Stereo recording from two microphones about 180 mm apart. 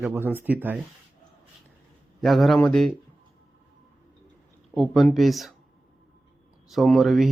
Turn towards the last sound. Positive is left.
turn(degrees=0)  # may be behind; listen again after turning